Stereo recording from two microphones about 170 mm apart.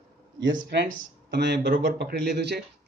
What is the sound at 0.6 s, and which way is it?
Speech, 60° right (ahead or behind).